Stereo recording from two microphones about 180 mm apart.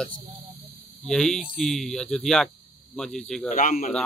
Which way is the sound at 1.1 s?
5° left (ahead or behind).